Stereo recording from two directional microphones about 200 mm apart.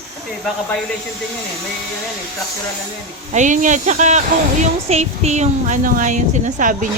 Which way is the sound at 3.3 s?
40° right (ahead or behind).